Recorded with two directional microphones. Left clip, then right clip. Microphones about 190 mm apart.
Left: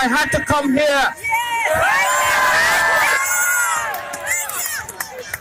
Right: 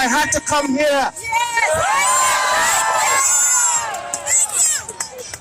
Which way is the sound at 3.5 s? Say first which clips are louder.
Left 1 dB; 50° right (ahead or behind).